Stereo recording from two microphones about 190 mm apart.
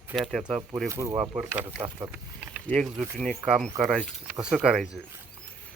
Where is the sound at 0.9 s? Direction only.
15° right (ahead or behind).